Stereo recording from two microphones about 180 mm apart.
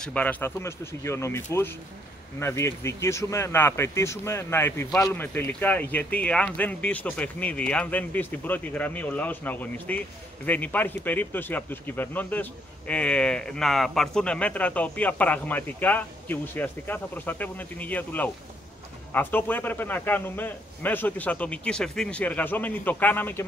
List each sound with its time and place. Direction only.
0.0 s speech: 5° left (ahead or behind)